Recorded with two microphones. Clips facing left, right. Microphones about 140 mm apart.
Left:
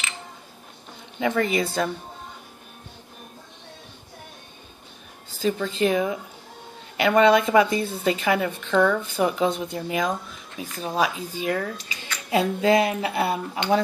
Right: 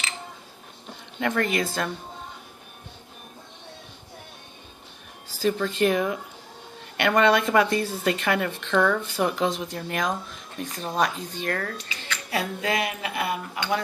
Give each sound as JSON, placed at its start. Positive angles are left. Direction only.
{"t": 1.2, "sound": "speech", "side_deg": 5}
{"t": 5.5, "sound": "speech", "side_deg": 5}
{"t": 12.3, "sound": "speech", "side_deg": 25}